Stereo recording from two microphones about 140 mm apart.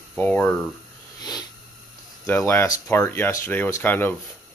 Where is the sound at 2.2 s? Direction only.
15° left (ahead or behind).